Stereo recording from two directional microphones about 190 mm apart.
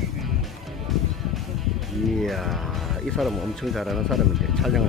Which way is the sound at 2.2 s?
Centre (ahead or behind).